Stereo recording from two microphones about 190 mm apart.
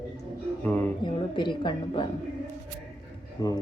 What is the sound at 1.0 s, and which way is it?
A woman's voice, 25° left (ahead or behind).